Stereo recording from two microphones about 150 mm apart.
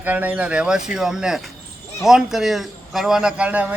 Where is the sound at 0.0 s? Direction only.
10° right (ahead or behind).